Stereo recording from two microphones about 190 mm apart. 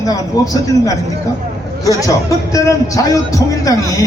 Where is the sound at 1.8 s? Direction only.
20° left (ahead or behind).